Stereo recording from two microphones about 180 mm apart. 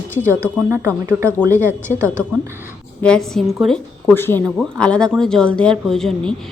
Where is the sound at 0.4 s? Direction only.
15° right (ahead or behind).